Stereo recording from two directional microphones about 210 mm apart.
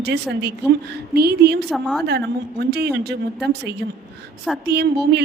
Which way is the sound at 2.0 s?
50° right (ahead or behind).